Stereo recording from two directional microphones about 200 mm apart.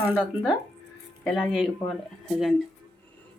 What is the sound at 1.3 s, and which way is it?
Speech, centre (ahead or behind).